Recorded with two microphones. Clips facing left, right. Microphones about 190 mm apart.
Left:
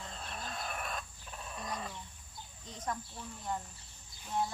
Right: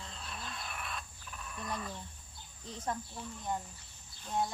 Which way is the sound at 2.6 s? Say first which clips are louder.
Right 2 dB; 30° right (ahead or behind).